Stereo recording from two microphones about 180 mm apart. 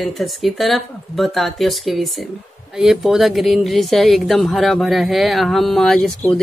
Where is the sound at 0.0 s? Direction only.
Centre (ahead or behind).